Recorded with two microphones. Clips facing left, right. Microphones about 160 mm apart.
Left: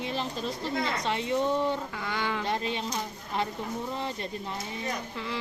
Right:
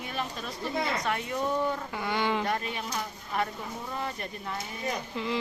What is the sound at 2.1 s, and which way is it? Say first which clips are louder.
Speech: right 4 dB; 20° right (ahead or behind).